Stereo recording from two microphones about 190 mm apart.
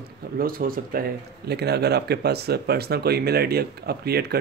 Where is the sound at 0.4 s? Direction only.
50° right (ahead or behind).